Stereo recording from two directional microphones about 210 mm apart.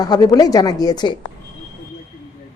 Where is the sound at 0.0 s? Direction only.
20° left (ahead or behind).